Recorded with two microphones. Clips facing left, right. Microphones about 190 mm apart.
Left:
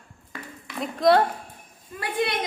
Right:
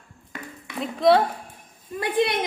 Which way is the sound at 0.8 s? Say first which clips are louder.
Right 1 dB; centre (ahead or behind).